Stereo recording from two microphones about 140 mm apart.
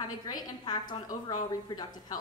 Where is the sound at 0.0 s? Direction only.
30° left (ahead or behind).